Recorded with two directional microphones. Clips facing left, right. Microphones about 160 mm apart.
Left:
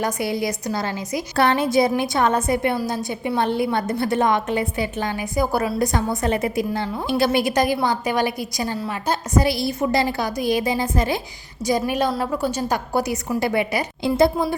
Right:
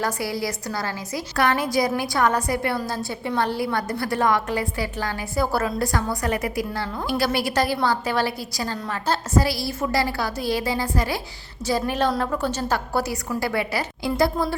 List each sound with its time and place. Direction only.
0.0 s a woman's voice: 20° left (ahead or behind)